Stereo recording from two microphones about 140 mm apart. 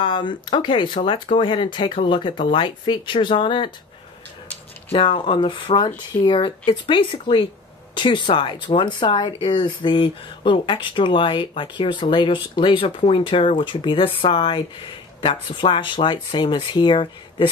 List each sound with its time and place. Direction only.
0.0 s speech: 35° left (ahead or behind)
4.9 s speech: 40° left (ahead or behind)